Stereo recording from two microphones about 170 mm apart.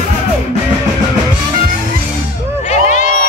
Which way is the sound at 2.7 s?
45° left (ahead or behind).